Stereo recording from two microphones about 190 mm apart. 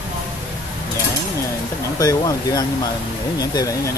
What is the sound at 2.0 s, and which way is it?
Speech, 20° left (ahead or behind).